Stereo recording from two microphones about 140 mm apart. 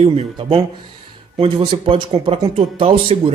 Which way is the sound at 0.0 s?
45° right (ahead or behind).